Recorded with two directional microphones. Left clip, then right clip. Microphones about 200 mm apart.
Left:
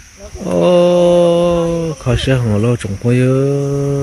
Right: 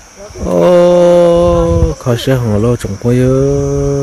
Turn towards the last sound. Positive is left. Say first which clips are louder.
# right 4 dB
turn(degrees=-10)  # may be behind; listen again after turning